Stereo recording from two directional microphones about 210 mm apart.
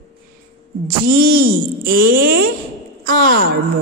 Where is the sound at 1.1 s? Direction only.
45° right (ahead or behind).